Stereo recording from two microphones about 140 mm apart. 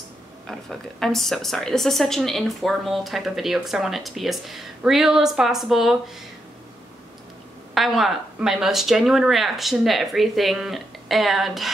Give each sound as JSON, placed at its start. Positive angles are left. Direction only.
{"t": 0.5, "sound": "a woman's voice", "side_deg": 5}
{"t": 7.7, "sound": "a woman's voice", "side_deg": 0}